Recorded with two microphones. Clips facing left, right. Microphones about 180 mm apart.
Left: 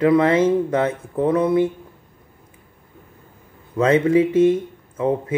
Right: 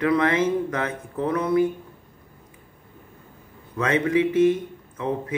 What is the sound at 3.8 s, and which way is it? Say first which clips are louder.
Speech: left 6 dB; 30° left (ahead or behind).